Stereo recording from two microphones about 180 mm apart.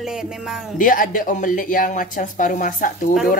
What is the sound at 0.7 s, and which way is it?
Speech, 50° left (ahead or behind).